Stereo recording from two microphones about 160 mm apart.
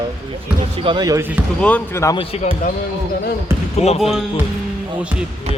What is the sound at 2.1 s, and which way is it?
Speech, 40° left (ahead or behind).